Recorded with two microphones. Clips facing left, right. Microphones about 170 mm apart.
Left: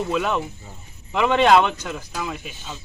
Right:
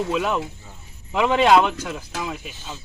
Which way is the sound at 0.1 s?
5° right (ahead or behind).